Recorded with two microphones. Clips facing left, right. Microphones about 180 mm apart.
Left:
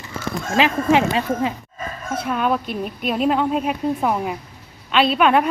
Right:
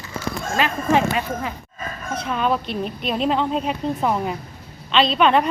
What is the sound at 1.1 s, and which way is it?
Speech, 25° left (ahead or behind).